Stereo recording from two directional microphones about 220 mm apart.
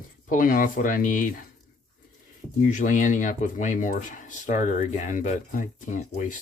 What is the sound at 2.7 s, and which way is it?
Speech, 35° left (ahead or behind).